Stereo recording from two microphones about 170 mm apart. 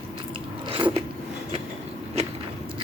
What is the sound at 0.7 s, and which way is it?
Biting, 30° right (ahead or behind).